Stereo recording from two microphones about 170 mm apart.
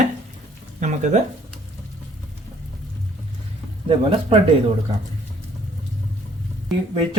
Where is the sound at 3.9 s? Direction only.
30° right (ahead or behind).